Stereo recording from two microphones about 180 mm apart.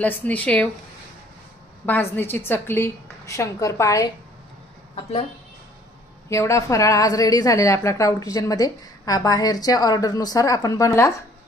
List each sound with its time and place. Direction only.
0.0 s a woman's voice: 10° left (ahead or behind)
1.9 s a woman's voice: 10° left (ahead or behind)
6.2 s a woman's voice: 15° left (ahead or behind)